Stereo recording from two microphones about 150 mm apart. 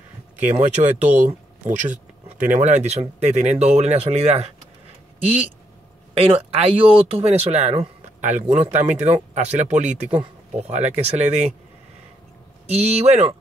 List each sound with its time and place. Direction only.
0.4 s speech: 50° right (ahead or behind)
6.1 s speech: 40° right (ahead or behind)
12.6 s speech: 45° right (ahead or behind)